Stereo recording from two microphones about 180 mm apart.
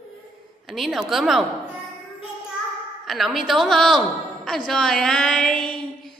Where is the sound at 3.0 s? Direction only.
Centre (ahead or behind).